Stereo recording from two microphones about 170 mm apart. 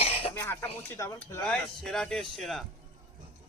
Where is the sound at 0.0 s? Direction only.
35° left (ahead or behind).